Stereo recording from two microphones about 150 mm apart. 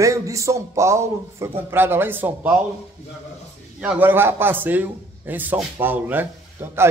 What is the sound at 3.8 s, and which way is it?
A man's voice, 10° right (ahead or behind).